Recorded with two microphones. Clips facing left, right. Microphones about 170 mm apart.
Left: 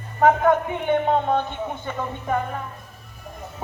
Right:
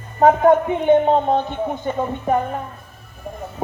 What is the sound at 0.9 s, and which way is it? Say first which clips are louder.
Music: right 5 dB; 35° right (ahead or behind).